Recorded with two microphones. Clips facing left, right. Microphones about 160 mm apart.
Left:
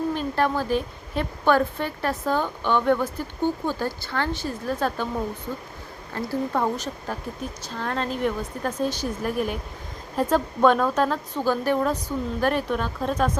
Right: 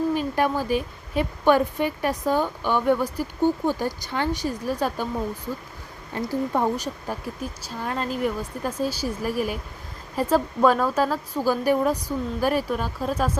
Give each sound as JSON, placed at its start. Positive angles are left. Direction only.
{"t": 0.1, "sound": "speech", "side_deg": -10}
{"t": 6.1, "sound": "speech", "side_deg": -15}